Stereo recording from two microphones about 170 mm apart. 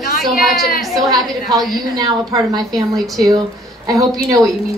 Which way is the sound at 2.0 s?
20° right (ahead or behind).